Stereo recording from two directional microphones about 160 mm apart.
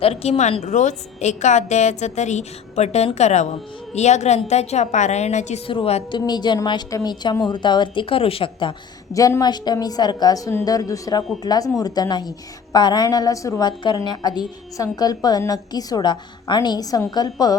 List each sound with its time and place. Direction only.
0.0 s a woman's voice: 40° left (ahead or behind)
5.6 s a woman's voice: 35° left (ahead or behind)
9.1 s a woman's voice: 20° left (ahead or behind)